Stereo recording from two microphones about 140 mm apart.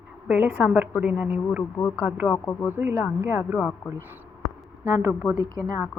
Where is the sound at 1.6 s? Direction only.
15° left (ahead or behind).